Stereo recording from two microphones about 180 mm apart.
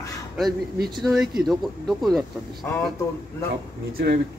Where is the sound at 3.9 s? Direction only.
55° right (ahead or behind).